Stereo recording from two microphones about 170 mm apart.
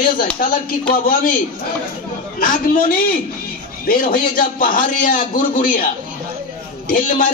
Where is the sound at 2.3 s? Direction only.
55° left (ahead or behind).